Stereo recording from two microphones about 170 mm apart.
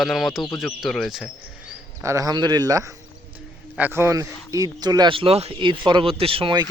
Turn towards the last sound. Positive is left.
turn(degrees=-30)  # may be behind; listen again after turning